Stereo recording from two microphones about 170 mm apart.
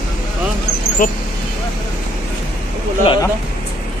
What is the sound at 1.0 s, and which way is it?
Speech, 55° left (ahead or behind).